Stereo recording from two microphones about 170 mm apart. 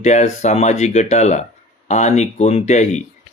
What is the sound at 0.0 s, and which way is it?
Speech, 40° left (ahead or behind).